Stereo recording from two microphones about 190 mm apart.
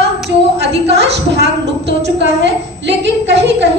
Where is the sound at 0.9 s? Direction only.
65° right (ahead or behind).